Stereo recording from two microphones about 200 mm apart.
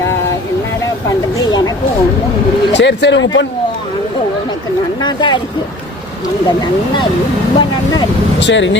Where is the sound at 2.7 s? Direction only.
60° left (ahead or behind).